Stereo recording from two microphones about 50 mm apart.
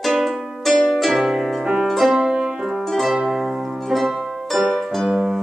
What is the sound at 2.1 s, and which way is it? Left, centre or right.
Music, centre.